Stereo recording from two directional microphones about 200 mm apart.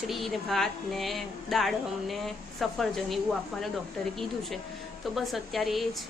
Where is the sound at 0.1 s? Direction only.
Centre (ahead or behind).